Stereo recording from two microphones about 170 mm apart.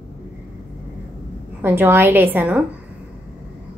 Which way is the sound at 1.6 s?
15° right (ahead or behind).